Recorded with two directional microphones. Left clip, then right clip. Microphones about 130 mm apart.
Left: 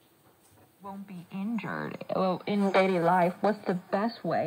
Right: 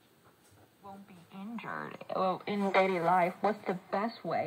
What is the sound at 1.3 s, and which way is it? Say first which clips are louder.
Speech: left 5 dB; 50° left (ahead or behind).